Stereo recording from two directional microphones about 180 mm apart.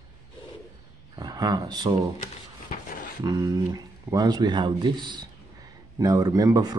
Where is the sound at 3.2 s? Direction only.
20° right (ahead or behind).